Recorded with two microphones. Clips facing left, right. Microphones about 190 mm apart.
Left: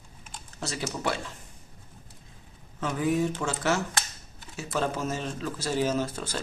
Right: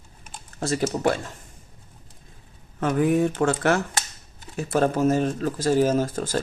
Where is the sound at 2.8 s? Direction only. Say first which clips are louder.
Right 6 dB; 55° right (ahead or behind).